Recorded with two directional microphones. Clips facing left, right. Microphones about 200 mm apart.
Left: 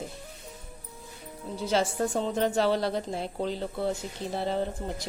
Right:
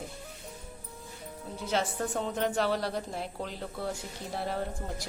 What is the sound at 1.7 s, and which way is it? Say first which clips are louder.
A woman's voice: left 4 dB; 30° left (ahead or behind).